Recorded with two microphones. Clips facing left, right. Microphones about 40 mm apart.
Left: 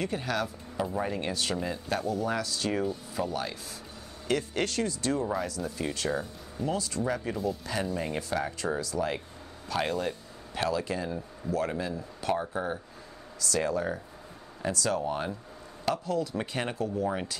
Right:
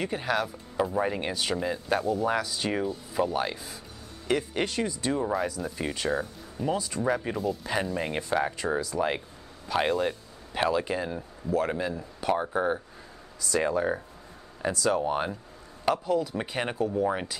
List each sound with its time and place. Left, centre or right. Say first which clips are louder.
0.0 s speech: right 2 dB; centre
12.4 s speech: right 5 dB; right
15.0 s speech: right 3 dB; right